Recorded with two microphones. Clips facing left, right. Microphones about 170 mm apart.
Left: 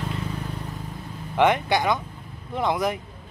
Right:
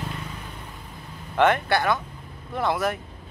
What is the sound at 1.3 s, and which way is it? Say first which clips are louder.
Speech: even; 15° left (ahead or behind).